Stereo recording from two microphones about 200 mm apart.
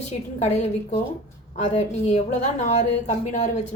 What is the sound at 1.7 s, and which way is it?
A woman's voice, 35° left (ahead or behind).